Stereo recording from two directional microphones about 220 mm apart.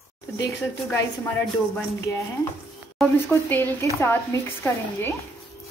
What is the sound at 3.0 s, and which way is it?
Speech, 10° left (ahead or behind).